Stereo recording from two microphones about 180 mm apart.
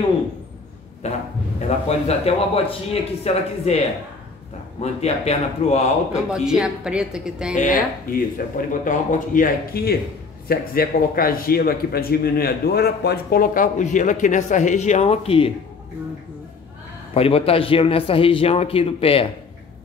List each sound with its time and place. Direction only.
1.0 s a man's voice: 35° left (ahead or behind)
5.0 s a man's voice: 35° left (ahead or behind)
6.2 s speech: 5° right (ahead or behind)
7.5 s a man's voice: 45° left (ahead or behind); by 15.5 s 30° left (ahead or behind)
17.1 s a man's voice: 30° left (ahead or behind)